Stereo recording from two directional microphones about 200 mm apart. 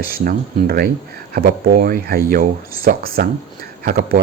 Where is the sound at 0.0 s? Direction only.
45° right (ahead or behind).